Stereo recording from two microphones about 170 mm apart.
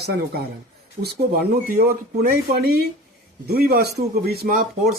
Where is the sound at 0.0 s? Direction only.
65° right (ahead or behind).